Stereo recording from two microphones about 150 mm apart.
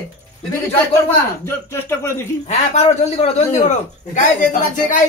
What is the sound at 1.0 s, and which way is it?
Speech, 15° left (ahead or behind).